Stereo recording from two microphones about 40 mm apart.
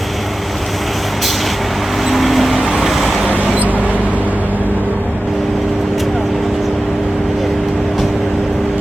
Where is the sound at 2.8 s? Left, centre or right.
Centre.